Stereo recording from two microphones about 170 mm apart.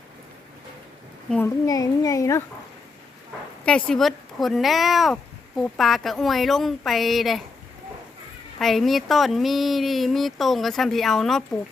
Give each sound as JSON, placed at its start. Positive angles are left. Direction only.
{"t": 1.6, "sound": "a child's voice", "side_deg": 20}
{"t": 3.7, "sound": "speech", "side_deg": 5}
{"t": 8.5, "sound": "speech", "side_deg": 0}